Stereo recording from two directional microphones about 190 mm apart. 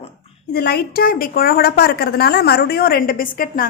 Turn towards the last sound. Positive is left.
turn(degrees=50)  # may be behind; listen again after turning